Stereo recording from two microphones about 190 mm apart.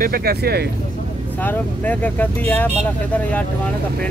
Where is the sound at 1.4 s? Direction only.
10° left (ahead or behind).